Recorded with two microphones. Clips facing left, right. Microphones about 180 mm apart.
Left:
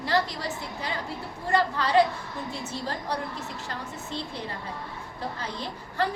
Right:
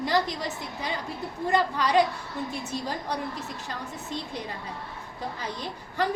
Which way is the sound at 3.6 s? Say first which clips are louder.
Even; 15° right (ahead or behind).